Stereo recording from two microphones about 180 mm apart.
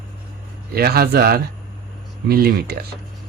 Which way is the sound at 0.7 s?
60° right (ahead or behind).